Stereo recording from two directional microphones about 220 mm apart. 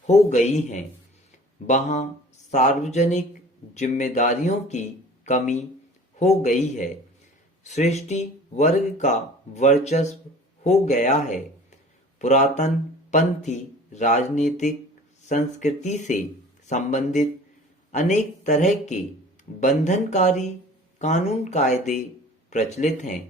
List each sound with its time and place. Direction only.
0.1 s speech: 30° left (ahead or behind)
12.2 s speech: 30° left (ahead or behind)